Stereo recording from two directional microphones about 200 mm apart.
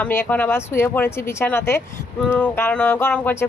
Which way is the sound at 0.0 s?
10° left (ahead or behind).